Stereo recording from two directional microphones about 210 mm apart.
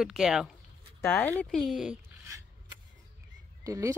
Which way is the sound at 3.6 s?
15° right (ahead or behind).